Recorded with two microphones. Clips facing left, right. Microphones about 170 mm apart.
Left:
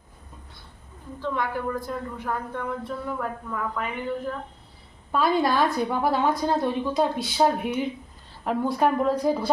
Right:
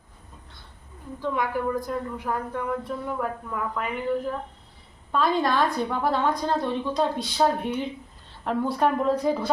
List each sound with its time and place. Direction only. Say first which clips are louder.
1.2 s a woman's voice: right 2 dB; 10° right (ahead or behind)
5.1 s a woman's voice: left 1 dB; 10° left (ahead or behind)